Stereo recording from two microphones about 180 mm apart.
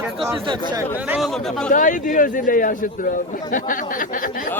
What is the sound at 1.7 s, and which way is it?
A man's voice, 45° left (ahead or behind).